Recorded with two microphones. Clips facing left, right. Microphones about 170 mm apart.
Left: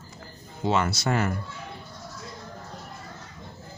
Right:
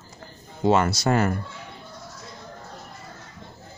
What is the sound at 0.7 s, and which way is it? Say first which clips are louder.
Speech: right 5 dB; 40° right (ahead or behind).